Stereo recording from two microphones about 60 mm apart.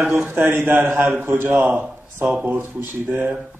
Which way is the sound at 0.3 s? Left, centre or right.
Right.